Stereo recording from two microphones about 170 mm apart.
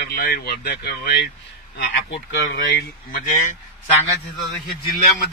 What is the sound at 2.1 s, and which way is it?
Speech, 90° left.